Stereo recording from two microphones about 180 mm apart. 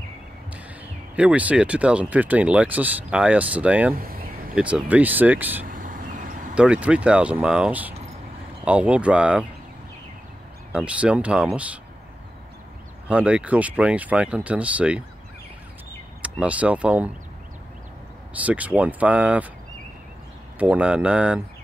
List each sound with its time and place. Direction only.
1.1 s speech: 10° right (ahead or behind)
3.9 s a sound: 55° right (ahead or behind)
4.6 s speech: 5° right (ahead or behind)
5.7 s vehicle: 50° right (ahead or behind)
6.5 s speech: 5° right (ahead or behind)
10.7 s speech: 5° right (ahead or behind)
13.1 s speech: 5° right (ahead or behind)
16.2 s speech: 5° right (ahead or behind)
18.4 s speech: 10° right (ahead or behind)
20.5 s speech: 10° right (ahead or behind)